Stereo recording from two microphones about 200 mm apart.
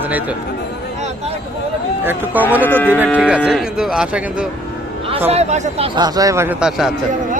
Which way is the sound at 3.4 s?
5° right (ahead or behind).